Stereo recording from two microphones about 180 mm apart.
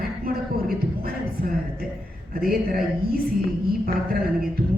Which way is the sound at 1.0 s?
55° right (ahead or behind).